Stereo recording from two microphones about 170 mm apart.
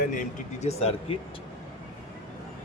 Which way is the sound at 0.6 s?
40° left (ahead or behind).